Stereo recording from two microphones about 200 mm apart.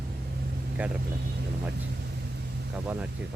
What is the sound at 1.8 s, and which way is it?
Vehicle, 55° right (ahead or behind).